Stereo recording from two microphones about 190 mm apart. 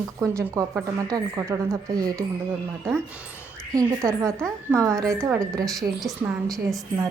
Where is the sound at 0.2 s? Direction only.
15° right (ahead or behind).